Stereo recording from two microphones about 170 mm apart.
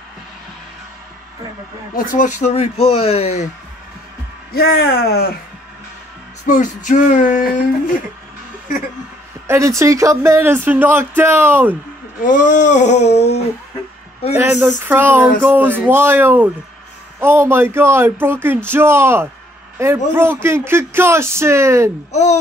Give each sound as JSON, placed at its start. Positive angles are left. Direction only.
{"t": 2.0, "sound": "speech", "side_deg": 50}
{"t": 4.5, "sound": "speech", "side_deg": 65}
{"t": 6.4, "sound": "a sound", "side_deg": 45}
{"t": 9.5, "sound": "speech", "side_deg": -15}
{"t": 12.2, "sound": "a sound", "side_deg": 50}
{"t": 14.3, "sound": "speech", "side_deg": -10}
{"t": 22.1, "sound": "speech", "side_deg": 40}